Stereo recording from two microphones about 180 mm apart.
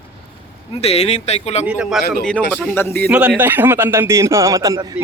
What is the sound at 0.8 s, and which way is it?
Speech, 35° left (ahead or behind).